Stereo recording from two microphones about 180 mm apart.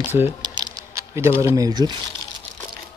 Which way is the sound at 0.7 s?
15° right (ahead or behind).